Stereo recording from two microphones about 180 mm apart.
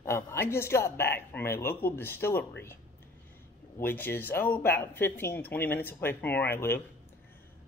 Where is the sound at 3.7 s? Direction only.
10° left (ahead or behind).